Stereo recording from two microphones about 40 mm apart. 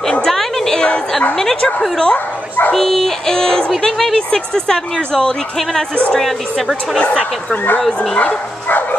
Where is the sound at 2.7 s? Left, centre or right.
Centre.